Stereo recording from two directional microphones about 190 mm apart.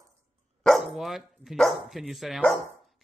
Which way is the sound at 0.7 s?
Centre (ahead or behind).